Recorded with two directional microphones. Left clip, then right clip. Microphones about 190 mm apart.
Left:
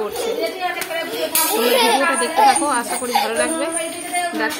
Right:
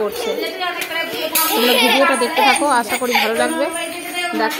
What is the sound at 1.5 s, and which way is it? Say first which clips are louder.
Speech: right 2 dB; 35° left (ahead or behind).